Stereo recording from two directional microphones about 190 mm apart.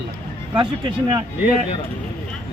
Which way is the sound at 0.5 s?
25° right (ahead or behind).